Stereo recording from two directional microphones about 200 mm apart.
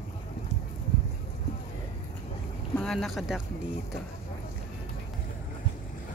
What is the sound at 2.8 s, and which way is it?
Speech, centre (ahead or behind).